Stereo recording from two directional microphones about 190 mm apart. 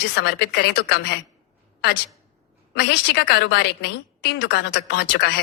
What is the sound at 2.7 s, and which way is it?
A woman's voice, 60° left (ahead or behind).